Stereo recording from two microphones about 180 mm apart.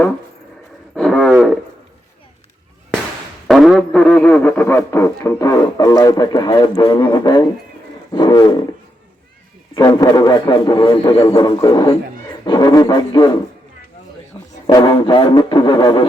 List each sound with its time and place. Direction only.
0.9 s wild animals: 5° left (ahead or behind)
3.4 s music: centre (ahead or behind); by 7.4 s 20° left (ahead or behind)
8.1 s a man's voice: 25° left (ahead or behind)
9.7 s a man's voice: 20° left (ahead or behind)
11.3 s a man's voice: 20° left (ahead or behind)
14.3 s music: 25° left (ahead or behind)
14.7 s a man's voice: 25° left (ahead or behind)